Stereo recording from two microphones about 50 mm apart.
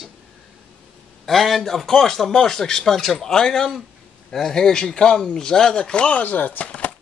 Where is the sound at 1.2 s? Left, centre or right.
Centre.